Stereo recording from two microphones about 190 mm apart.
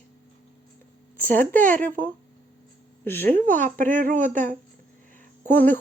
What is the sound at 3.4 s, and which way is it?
Speech, 45° right (ahead or behind).